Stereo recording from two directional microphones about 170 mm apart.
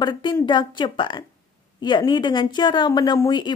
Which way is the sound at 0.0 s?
25° left (ahead or behind).